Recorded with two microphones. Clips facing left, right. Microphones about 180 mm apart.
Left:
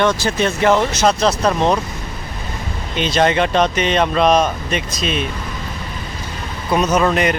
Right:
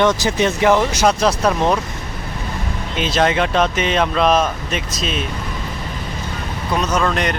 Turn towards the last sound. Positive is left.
turn(degrees=5)  # may be behind; listen again after turning